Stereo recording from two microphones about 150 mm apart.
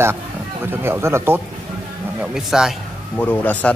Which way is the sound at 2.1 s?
5° right (ahead or behind).